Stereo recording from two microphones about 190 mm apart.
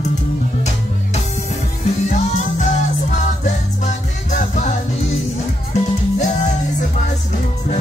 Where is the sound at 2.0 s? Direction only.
40° left (ahead or behind).